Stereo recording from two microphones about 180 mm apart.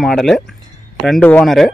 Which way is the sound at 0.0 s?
Centre (ahead or behind).